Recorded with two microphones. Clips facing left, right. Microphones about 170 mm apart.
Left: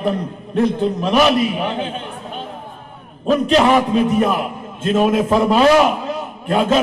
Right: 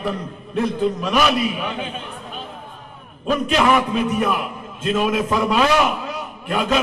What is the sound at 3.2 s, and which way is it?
A man's voice, 35° left (ahead or behind).